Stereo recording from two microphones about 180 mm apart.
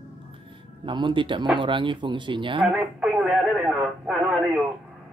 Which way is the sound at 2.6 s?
5° right (ahead or behind).